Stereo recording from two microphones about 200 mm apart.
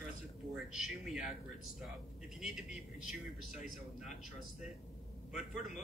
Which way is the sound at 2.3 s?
5° right (ahead or behind).